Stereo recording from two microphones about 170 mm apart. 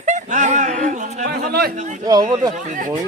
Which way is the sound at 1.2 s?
70° right (ahead or behind).